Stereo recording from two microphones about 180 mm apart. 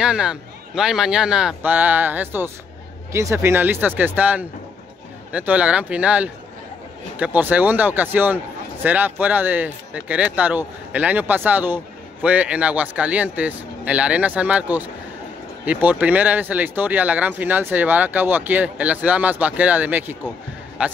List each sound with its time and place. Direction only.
0.0 s a man's voice: 5° right (ahead or behind)